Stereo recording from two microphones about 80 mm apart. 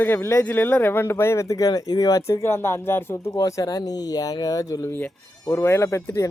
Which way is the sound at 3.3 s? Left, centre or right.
Left.